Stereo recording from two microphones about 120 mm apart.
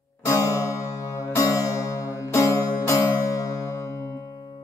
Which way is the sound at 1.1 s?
25° left (ahead or behind).